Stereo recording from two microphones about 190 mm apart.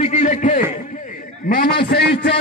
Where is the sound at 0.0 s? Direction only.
40° left (ahead or behind).